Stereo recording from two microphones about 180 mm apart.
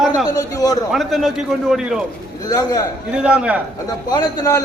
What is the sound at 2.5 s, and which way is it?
Speech, 20° left (ahead or behind).